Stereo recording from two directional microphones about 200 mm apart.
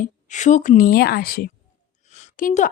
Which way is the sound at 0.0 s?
40° left (ahead or behind).